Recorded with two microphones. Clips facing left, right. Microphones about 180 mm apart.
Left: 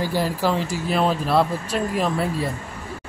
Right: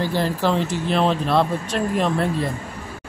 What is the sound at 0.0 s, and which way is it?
Speech, 10° left (ahead or behind).